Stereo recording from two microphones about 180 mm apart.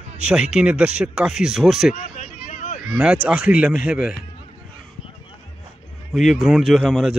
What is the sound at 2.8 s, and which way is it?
Speech, 5° right (ahead or behind).